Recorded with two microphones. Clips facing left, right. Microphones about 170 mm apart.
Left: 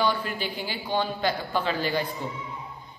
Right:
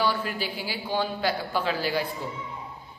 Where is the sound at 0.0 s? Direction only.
5° right (ahead or behind).